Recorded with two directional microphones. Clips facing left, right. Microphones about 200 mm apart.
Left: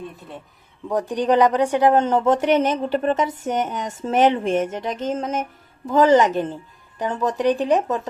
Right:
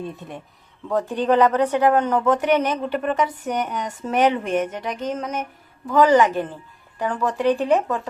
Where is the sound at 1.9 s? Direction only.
25° left (ahead or behind).